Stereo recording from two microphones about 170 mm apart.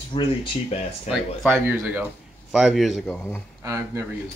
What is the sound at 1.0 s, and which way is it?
Speech, 5° right (ahead or behind).